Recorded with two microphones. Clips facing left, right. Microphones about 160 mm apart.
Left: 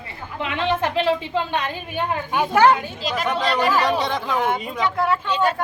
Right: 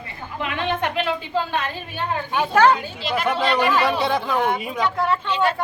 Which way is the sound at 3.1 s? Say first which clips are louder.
Right 2 dB; 5° right (ahead or behind).